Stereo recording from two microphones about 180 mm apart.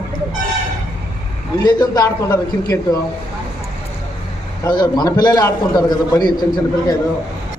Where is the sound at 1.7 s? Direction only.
20° left (ahead or behind).